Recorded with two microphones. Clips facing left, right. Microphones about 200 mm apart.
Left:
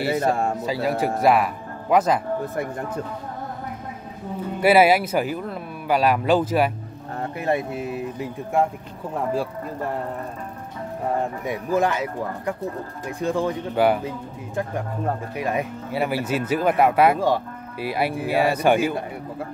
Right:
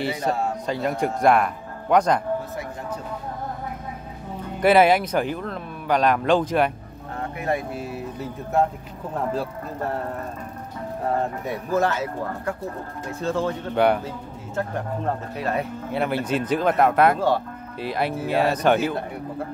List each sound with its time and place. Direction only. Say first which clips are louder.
0.3 s speech: left 2 dB; 50° left (ahead or behind)
0.7 s speech: even; 5° left (ahead or behind)
4.4 s speech: left 1 dB; 10° left (ahead or behind)
7.3 s speech: left 2 dB; 25° left (ahead or behind); by 9.5 s 10° left (ahead or behind)
11.4 s speech: left 2 dB; 15° left (ahead or behind)
13.7 s speech: even; 5° left (ahead or behind)
14.0 s speech: left 2 dB; 15° left (ahead or behind)